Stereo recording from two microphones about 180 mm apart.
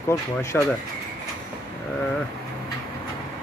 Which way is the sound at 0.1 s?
15° left (ahead or behind).